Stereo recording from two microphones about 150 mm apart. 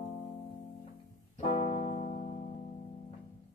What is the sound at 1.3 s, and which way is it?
Keyboard, 45° left (ahead or behind).